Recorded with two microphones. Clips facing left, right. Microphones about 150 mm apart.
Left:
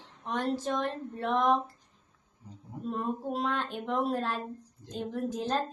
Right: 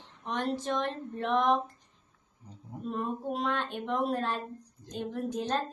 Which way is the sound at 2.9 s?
5° left (ahead or behind).